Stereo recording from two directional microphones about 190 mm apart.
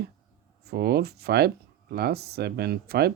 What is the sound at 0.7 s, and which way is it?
Speech, 55° right (ahead or behind).